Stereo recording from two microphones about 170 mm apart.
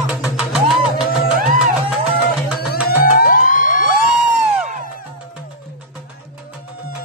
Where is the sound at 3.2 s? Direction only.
55° left (ahead or behind).